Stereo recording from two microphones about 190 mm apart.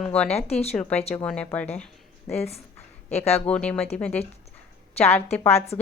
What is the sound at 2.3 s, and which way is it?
Speech, 35° left (ahead or behind).